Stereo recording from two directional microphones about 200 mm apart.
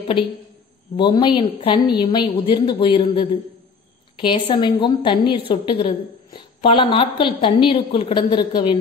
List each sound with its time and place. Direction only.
0.9 s a woman's voice: 25° left (ahead or behind)